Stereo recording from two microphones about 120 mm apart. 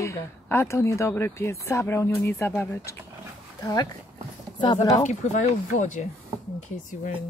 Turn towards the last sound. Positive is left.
turn(degrees=85)